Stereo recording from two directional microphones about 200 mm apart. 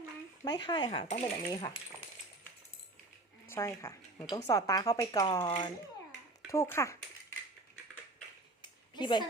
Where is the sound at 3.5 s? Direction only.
15° left (ahead or behind).